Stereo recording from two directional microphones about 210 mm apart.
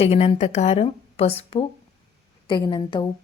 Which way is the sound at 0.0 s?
30° left (ahead or behind).